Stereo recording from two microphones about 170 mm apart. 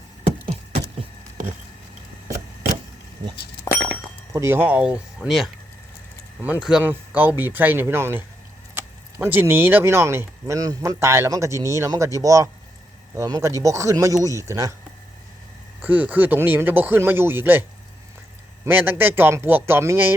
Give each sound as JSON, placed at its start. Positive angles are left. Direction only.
{"t": 4.3, "sound": "speech", "side_deg": -15}
{"t": 15.8, "sound": "speech", "side_deg": -10}